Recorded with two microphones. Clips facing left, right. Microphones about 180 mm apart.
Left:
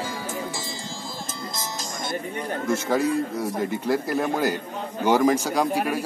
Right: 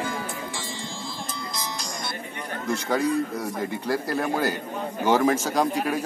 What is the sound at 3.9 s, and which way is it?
A man's voice, 15° left (ahead or behind).